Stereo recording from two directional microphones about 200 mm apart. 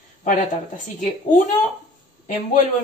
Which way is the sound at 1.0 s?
35° left (ahead or behind).